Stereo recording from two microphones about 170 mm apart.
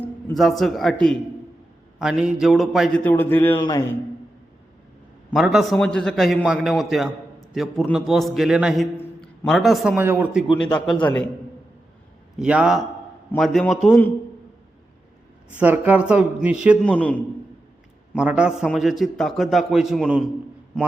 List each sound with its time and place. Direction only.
0.3 s a man's voice: centre (ahead or behind)
3.0 s a man's voice: 10° left (ahead or behind)
5.3 s a man's voice: centre (ahead or behind)
11.0 s a man's voice: 10° left (ahead or behind)
12.4 s a man's voice: 5° right (ahead or behind)
15.5 s speech: 10° right (ahead or behind)
16.8 s a man's voice: 5° left (ahead or behind)
18.1 s a man's voice: 5° right (ahead or behind)